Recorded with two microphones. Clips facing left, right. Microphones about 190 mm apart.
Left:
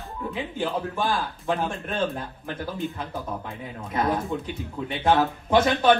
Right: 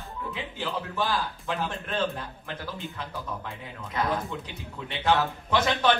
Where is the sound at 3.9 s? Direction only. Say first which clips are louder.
Left 4 dB; 50° left (ahead or behind).